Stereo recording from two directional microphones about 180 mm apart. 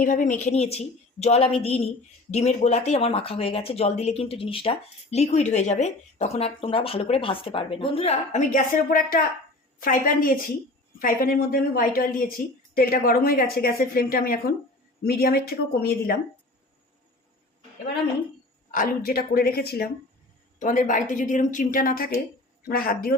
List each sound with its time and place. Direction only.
0.0 s a woman's voice: 45° left (ahead or behind)
18.7 s a woman's voice: 50° left (ahead or behind)
20.6 s a woman's voice: 45° left (ahead or behind)